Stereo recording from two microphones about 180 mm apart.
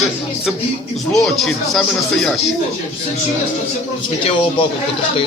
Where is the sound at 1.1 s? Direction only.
Centre (ahead or behind).